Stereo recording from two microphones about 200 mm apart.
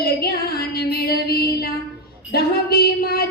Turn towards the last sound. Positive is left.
turn(degrees=50)  # may be behind; listen again after turning